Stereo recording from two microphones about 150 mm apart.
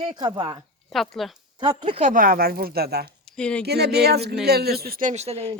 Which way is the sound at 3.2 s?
5° left (ahead or behind).